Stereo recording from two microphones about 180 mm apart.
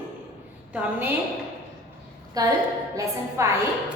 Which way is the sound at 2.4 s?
20° right (ahead or behind).